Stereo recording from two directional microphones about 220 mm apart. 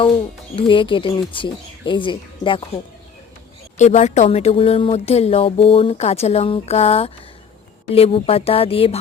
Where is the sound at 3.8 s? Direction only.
30° left (ahead or behind).